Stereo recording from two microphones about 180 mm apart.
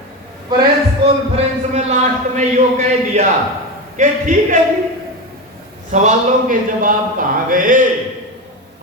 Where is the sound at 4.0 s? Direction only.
45° right (ahead or behind).